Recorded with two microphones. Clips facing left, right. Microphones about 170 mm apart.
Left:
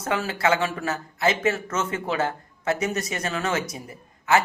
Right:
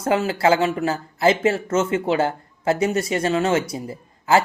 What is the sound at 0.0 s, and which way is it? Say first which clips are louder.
Speech: right 5 dB; 30° right (ahead or behind).